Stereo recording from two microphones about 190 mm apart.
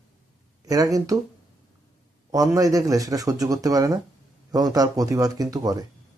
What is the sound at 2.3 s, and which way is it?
Speech, 20° right (ahead or behind).